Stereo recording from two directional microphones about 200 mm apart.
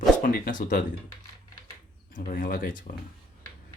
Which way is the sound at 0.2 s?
45° left (ahead or behind).